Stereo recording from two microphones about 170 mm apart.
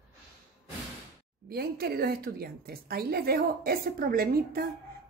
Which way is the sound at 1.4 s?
65° right (ahead or behind).